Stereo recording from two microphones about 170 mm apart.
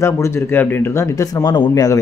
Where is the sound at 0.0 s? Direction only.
15° left (ahead or behind).